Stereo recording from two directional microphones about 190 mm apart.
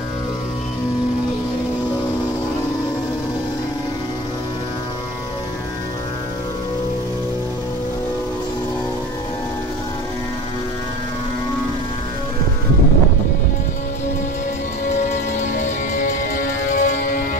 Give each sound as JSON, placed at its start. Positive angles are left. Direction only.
{"t": 15.0, "sound": "music", "side_deg": 40}